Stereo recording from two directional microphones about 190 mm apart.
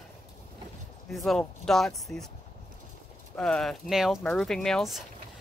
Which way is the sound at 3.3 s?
5° left (ahead or behind).